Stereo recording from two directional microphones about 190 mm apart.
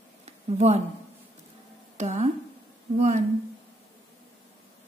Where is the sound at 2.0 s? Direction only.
35° right (ahead or behind).